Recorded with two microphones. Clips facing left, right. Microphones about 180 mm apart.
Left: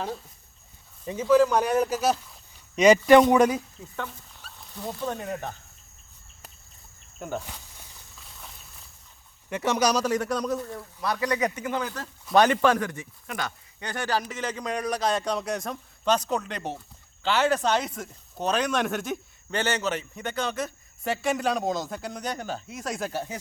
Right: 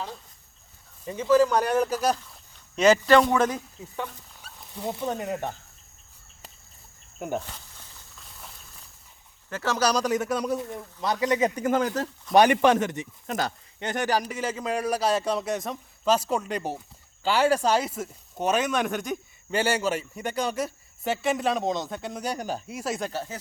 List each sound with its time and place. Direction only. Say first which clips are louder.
1.0 s a man's voice: even; 10° left (ahead or behind)
3.9 s speech: right 1 dB; 10° right (ahead or behind)
7.2 s speech: right 3 dB; 10° right (ahead or behind)
7.4 s snake: left 1 dB; 10° left (ahead or behind)
9.5 s speech: left 1 dB; 20° left (ahead or behind); by 11.6 s 25° right (ahead or behind)
11.6 s speech: right 6 dB; 45° right (ahead or behind)
12.3 s speech: right 2 dB; 15° right (ahead or behind)
13.2 s speech: right 4 dB; 35° right (ahead or behind)
13.7 s speech: right 3 dB; 20° right (ahead or behind); by 23.4 s 15° left (ahead or behind)